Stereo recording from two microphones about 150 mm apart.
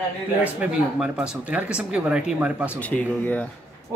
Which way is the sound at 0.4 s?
10° right (ahead or behind).